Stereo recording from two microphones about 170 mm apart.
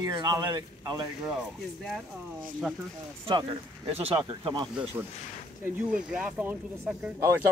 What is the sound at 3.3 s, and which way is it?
Speech, 30° right (ahead or behind).